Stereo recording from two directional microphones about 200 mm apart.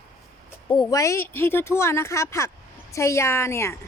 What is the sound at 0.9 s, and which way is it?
Speech, 15° left (ahead or behind).